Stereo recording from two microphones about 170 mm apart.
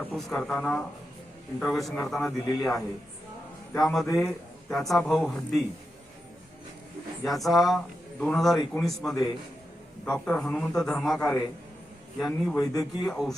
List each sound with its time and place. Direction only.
0.0 s a man's voice: centre (ahead or behind)
7.3 s a man's voice: centre (ahead or behind)
11.2 s a man's voice: 20° left (ahead or behind)
12.2 s a man's voice: centre (ahead or behind)